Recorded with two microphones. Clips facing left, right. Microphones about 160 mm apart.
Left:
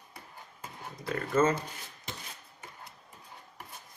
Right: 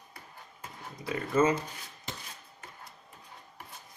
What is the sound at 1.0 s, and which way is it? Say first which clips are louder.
Speech: even; 10° right (ahead or behind).